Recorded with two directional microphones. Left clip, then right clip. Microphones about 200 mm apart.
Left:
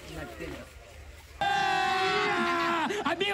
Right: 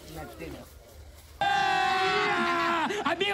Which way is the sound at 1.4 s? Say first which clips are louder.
Right 2 dB; centre (ahead or behind).